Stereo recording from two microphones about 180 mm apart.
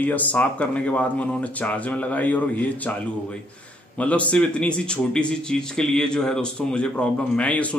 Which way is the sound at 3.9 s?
5° left (ahead or behind).